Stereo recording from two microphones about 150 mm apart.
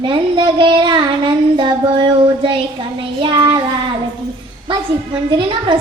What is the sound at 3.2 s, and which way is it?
Speech, 30° right (ahead or behind).